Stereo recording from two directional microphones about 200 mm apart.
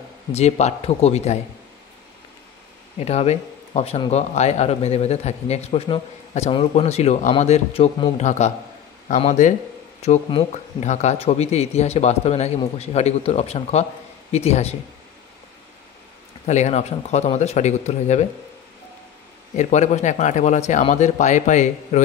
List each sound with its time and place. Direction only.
0.3 s a man's voice: 30° left (ahead or behind)
3.0 s a man's voice: 30° left (ahead or behind)
16.4 s a man's voice: 35° left (ahead or behind)
19.5 s a man's voice: 35° left (ahead or behind)